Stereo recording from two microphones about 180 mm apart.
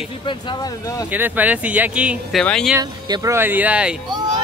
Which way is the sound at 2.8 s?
20° right (ahead or behind).